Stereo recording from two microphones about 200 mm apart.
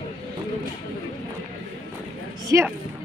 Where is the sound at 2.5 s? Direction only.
15° right (ahead or behind).